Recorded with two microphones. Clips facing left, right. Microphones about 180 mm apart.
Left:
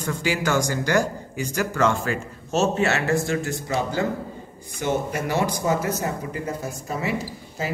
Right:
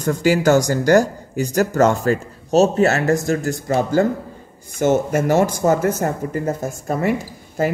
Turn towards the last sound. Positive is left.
turn(degrees=-50)  # may be behind; listen again after turning